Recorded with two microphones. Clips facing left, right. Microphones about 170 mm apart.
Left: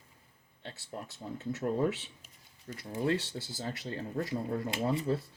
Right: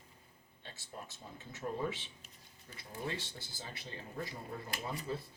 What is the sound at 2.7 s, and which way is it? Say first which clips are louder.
Speech: left 10 dB; 75° left (ahead or behind).